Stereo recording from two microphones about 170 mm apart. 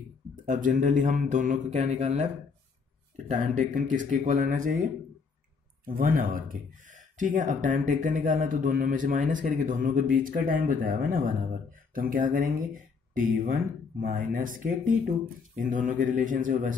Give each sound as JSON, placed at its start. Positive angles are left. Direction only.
{"t": 0.5, "sound": "speech", "side_deg": -50}
{"t": 3.3, "sound": "speech", "side_deg": -50}